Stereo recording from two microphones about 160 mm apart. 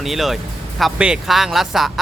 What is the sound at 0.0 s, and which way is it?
Speech, centre (ahead or behind).